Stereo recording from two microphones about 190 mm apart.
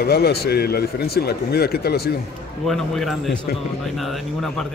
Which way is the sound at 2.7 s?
Centre (ahead or behind).